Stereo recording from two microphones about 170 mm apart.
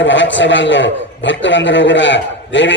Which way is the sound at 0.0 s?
90° left.